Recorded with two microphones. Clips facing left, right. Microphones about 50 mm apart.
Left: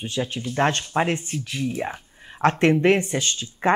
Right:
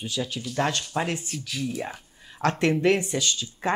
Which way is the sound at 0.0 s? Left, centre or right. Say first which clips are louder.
Left 3 dB; left.